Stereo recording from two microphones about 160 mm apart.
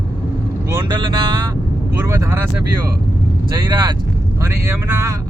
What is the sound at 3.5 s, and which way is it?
Speech, 25° right (ahead or behind).